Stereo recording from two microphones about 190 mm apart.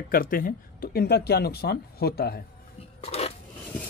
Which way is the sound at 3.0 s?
30° left (ahead or behind).